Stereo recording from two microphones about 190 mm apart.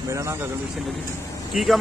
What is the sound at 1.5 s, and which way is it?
Speech, centre (ahead or behind).